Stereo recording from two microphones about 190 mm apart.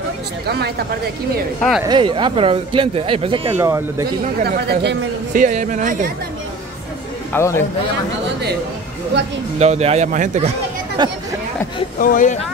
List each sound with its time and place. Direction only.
1.9 s speech: 25° right (ahead or behind)
3.5 s speech: 15° right (ahead or behind)
4.4 s speech: 60° right (ahead or behind)
5.3 s speech: 40° right (ahead or behind)
7.3 s a man's voice: 15° left (ahead or behind)
9.6 s speech: 35° right (ahead or behind)
11.0 s speech: 25° right (ahead or behind)
12.0 s speech: 45° left (ahead or behind)